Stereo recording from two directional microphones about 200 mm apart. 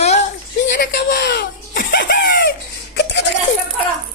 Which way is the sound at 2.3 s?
45° left (ahead or behind).